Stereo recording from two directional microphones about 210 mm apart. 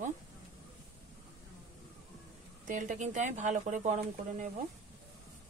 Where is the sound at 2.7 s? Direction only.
35° right (ahead or behind).